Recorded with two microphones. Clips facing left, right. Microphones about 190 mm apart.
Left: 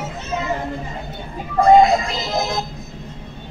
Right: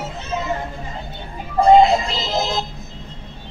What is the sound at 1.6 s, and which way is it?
Synthetic singing, 25° right (ahead or behind).